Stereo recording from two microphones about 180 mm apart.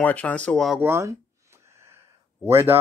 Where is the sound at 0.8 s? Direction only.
15° right (ahead or behind).